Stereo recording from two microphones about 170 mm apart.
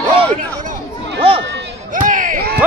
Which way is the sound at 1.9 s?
50° right (ahead or behind).